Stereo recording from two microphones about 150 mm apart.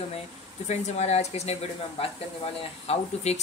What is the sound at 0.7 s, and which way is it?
Speech, 50° left (ahead or behind).